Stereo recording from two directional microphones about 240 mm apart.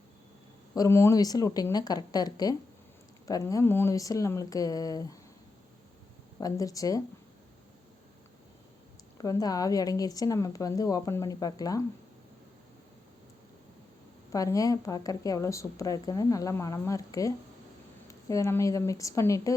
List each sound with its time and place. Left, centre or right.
0.8 s speech: centre
6.4 s speech: centre
9.1 s speech: centre
14.3 s speech: centre